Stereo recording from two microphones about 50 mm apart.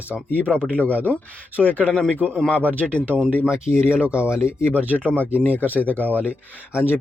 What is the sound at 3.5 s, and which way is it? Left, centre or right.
Speech, left.